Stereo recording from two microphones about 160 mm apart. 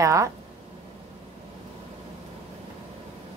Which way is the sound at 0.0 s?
20° right (ahead or behind).